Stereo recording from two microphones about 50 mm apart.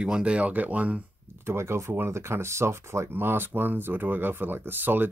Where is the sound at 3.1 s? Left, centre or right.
Right.